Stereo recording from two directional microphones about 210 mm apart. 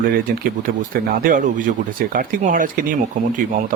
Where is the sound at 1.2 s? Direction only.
40° right (ahead or behind).